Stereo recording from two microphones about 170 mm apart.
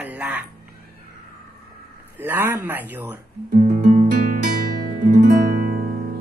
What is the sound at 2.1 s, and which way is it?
Speech, 10° right (ahead or behind).